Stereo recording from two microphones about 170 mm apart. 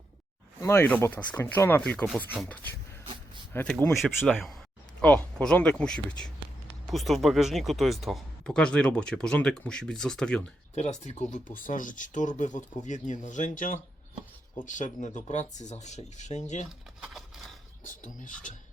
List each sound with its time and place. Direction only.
0.6 s speech: 15° left (ahead or behind)
3.5 s speech: 10° left (ahead or behind)
10.8 s speech: 45° left (ahead or behind)
16.6 s a sound: centre (ahead or behind)